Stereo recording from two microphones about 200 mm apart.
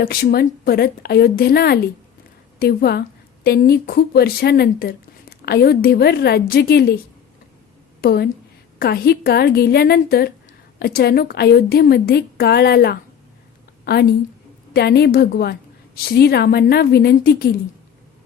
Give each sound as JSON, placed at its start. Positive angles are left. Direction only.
{"t": 0.0, "sound": "a woman's voice", "side_deg": 50}
{"t": 8.0, "sound": "a woman's voice", "side_deg": 50}